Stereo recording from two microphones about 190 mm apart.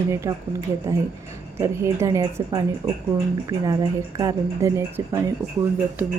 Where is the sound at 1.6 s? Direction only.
15° right (ahead or behind).